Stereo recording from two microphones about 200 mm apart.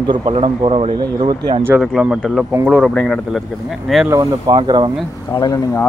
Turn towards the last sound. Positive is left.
turn(degrees=15)  # may be behind; listen again after turning